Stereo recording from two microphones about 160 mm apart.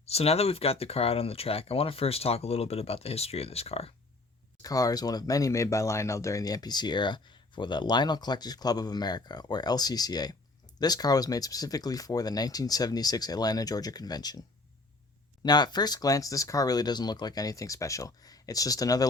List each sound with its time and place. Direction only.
0.0 s speech: 40° left (ahead or behind)
4.6 s speech: 20° left (ahead or behind)
15.4 s speech: 25° left (ahead or behind)